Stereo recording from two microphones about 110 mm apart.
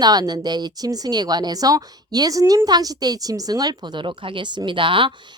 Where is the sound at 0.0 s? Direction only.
40° right (ahead or behind).